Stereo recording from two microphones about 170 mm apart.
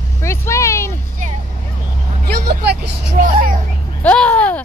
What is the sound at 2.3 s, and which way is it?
Speech, 75° right (ahead or behind).